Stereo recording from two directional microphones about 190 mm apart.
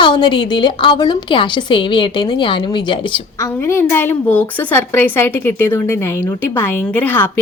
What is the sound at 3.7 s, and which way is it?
A woman's voice, 10° left (ahead or behind).